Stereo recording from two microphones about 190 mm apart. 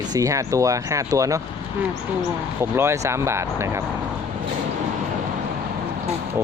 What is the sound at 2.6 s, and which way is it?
Speech, 15° right (ahead or behind).